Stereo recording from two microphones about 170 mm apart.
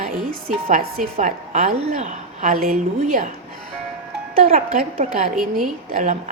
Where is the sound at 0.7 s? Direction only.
55° right (ahead or behind).